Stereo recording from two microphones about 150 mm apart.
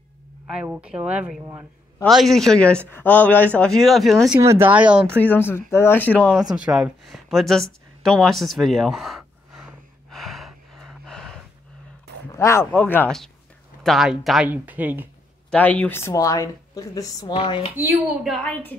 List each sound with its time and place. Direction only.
0.5 s speech: 5° right (ahead or behind)
1.4 s a man's voice: 20° right (ahead or behind)
2.0 s a woman's voice: centre (ahead or behind)
4.4 s speech: 15° right (ahead or behind)
5.2 s speech: 15° left (ahead or behind)
6.5 s speech: 5° right (ahead or behind)
10.1 s gasp: centre (ahead or behind)
12.3 s a woman's voice: 20° left (ahead or behind); by 15.0 s 10° right (ahead or behind)
15.5 s speech: 10° left (ahead or behind)
17.3 s speech: 35° left (ahead or behind)
17.7 s a woman's voice: 5° right (ahead or behind)